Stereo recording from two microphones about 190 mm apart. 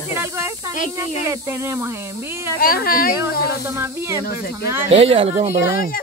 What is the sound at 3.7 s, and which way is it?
Speech, 15° right (ahead or behind).